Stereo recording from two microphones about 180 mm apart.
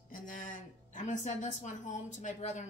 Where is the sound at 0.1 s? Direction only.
45° left (ahead or behind).